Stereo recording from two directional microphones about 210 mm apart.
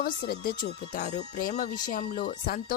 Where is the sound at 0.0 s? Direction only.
45° left (ahead or behind).